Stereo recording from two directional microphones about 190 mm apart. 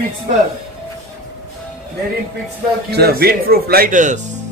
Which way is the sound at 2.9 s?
55° right (ahead or behind).